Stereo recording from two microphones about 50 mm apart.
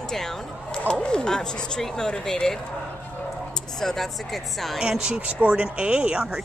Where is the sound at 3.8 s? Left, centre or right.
Centre.